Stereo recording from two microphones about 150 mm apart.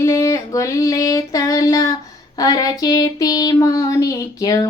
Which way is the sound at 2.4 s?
25° left (ahead or behind).